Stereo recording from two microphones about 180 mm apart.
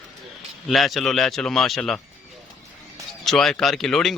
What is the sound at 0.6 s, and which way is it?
A man's voice, centre (ahead or behind).